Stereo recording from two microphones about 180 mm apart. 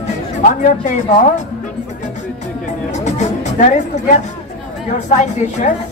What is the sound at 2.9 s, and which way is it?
Music, 40° left (ahead or behind).